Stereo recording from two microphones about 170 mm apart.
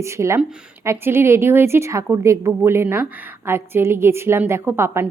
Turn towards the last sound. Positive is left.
turn(degrees=-15)  # may be behind; listen again after turning